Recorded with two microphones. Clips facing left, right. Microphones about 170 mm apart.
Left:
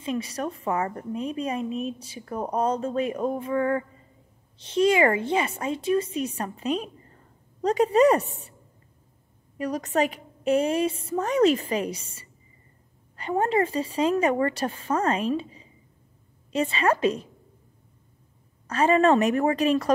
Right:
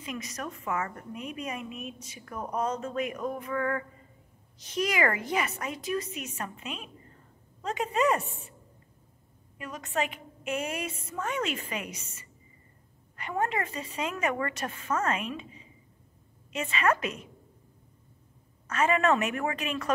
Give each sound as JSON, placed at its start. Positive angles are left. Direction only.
{"t": 0.0, "sound": "a woman's voice", "side_deg": 30}
{"t": 9.6, "sound": "a woman's voice", "side_deg": 40}
{"t": 18.7, "sound": "a woman's voice", "side_deg": 35}